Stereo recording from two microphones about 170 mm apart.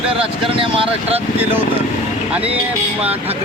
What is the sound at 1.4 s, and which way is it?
Speech, 10° right (ahead or behind).